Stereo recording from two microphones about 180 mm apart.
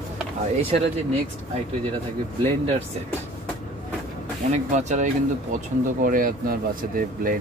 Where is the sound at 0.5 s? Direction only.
35° right (ahead or behind).